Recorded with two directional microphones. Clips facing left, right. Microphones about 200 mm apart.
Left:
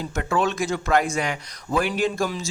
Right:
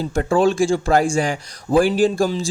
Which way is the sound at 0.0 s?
35° right (ahead or behind).